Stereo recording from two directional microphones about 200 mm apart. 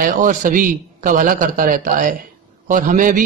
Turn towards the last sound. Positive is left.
turn(degrees=-40)  # may be behind; listen again after turning